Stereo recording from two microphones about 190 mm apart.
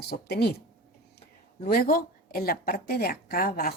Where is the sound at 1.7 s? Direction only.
55° left (ahead or behind).